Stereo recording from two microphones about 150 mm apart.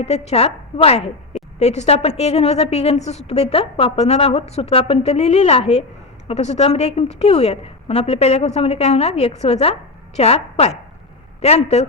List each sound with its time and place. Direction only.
0.0 s a woman's voice: 45° left (ahead or behind)